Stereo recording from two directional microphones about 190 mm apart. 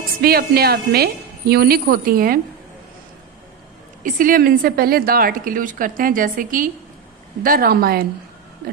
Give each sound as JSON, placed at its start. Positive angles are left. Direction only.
{"t": 0.2, "sound": "a woman's voice", "side_deg": -55}
{"t": 4.0, "sound": "a woman's voice", "side_deg": -45}